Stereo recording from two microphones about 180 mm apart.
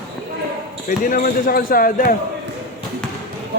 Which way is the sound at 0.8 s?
45° left (ahead or behind).